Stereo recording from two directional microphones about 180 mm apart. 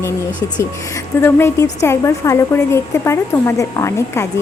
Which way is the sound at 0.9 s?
15° left (ahead or behind).